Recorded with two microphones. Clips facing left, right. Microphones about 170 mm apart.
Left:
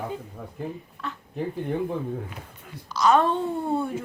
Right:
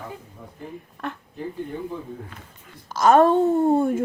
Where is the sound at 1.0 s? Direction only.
55° right (ahead or behind).